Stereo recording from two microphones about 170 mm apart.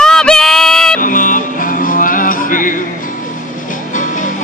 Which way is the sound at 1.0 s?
55° left (ahead or behind).